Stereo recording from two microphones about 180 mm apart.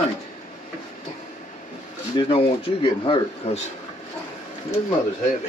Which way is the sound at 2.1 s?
30° left (ahead or behind).